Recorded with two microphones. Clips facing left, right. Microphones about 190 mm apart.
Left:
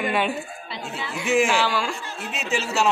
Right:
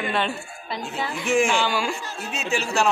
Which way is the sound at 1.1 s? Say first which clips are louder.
Left 1 dB; 5° left (ahead or behind).